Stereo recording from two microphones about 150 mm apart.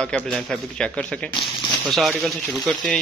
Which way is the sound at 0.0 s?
5° left (ahead or behind).